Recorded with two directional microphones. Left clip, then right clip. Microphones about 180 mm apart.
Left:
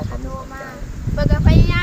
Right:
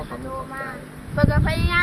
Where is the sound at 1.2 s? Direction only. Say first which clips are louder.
Left 2 dB; 10° left (ahead or behind).